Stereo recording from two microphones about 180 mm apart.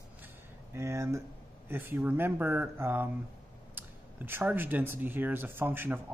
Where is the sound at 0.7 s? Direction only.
15° right (ahead or behind).